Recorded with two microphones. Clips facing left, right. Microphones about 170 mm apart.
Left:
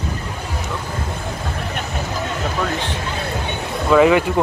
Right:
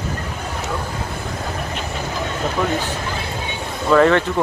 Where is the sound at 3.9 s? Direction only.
5° left (ahead or behind).